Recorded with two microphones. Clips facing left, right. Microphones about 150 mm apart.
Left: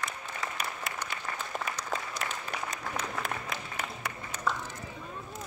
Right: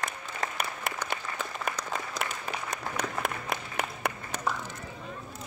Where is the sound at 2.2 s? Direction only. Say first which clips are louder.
Right 1 dB; 70° right (ahead or behind).